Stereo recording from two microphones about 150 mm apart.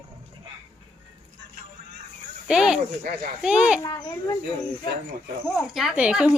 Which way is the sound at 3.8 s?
25° left (ahead or behind).